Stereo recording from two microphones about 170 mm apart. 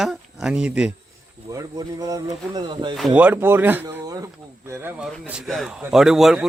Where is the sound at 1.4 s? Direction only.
20° right (ahead or behind).